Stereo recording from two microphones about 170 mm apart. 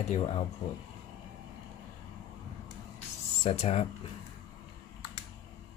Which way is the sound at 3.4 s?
40° left (ahead or behind).